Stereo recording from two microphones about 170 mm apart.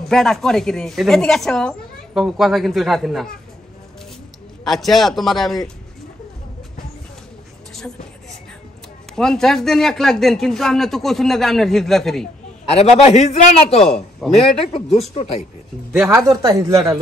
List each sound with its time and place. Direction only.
0.0 s a woman's voice: centre (ahead or behind)
4.6 s a woman's voice: centre (ahead or behind)
9.1 s a woman's voice: 5° left (ahead or behind)
13.0 s a man's voice: 40° left (ahead or behind)
13.8 s a man's voice: 5° left (ahead or behind)
14.4 s a man's voice: 35° left (ahead or behind)
15.9 s speech: 10° right (ahead or behind)